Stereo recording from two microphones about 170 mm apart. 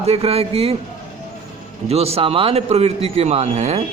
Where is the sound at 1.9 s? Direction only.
35° right (ahead or behind).